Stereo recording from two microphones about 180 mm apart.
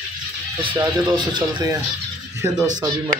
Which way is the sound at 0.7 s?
20° right (ahead or behind).